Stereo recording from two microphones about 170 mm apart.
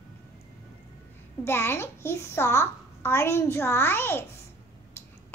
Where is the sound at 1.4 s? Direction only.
15° left (ahead or behind).